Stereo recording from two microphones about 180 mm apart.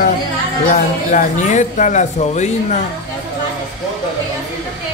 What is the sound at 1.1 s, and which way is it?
Speech, 40° left (ahead or behind).